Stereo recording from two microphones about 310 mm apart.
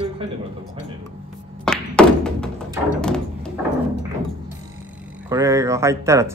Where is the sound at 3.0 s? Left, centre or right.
Centre.